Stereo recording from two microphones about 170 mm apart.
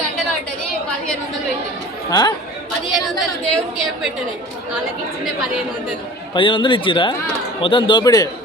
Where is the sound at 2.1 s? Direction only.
25° left (ahead or behind).